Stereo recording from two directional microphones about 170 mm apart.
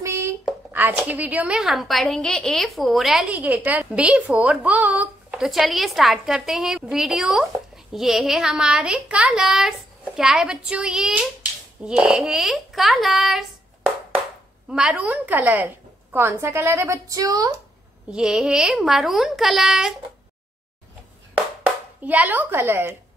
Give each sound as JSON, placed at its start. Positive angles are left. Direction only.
{"t": 0.0, "sound": "a sound", "side_deg": -15}
{"t": 0.5, "sound": "a woman's voice", "side_deg": -10}
{"t": 18.1, "sound": "a woman's voice", "side_deg": -5}
{"t": 21.6, "sound": "speech", "side_deg": -10}